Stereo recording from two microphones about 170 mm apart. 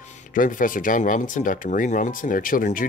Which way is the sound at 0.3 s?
50° left (ahead or behind).